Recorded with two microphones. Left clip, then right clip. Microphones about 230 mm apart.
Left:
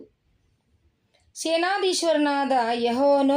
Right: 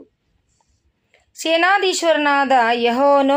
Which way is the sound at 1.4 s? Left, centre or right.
Right.